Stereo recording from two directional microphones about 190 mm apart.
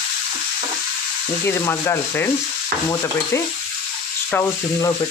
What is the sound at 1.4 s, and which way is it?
Speech, 15° left (ahead or behind).